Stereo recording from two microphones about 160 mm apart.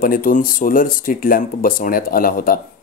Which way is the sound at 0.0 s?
60° left (ahead or behind).